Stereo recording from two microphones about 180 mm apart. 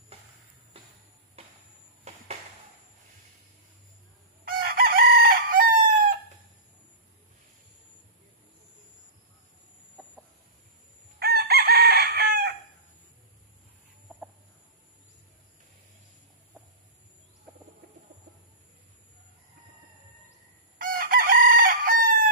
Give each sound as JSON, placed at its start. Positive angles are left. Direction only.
{"t": 2.1, "sound": "a sound", "side_deg": -40}
{"t": 4.5, "sound": "chicken", "side_deg": -55}
{"t": 11.1, "sound": "chicken", "side_deg": -60}
{"t": 20.7, "sound": "chicken", "side_deg": -50}